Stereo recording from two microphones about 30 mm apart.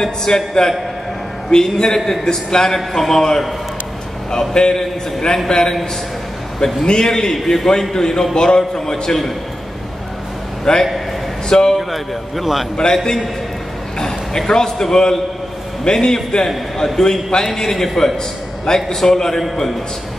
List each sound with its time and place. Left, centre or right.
0.0 s a man's voice: centre
2.6 s a man's voice: centre
4.3 s a man's voice: left
10.6 s a man's voice: left
11.7 s a man's voice: centre
13.9 s a sound: centre
14.5 s a man's voice: centre
16.4 s a man's voice: centre
17.5 s a man's voice: centre
18.7 s a man's voice: left